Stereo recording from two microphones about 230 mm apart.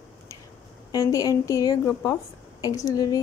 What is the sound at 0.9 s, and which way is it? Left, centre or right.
A woman's voice, centre.